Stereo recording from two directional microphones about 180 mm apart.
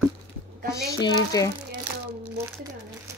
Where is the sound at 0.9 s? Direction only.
20° left (ahead or behind).